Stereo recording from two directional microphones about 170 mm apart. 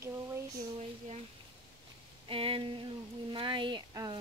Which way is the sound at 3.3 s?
30° right (ahead or behind).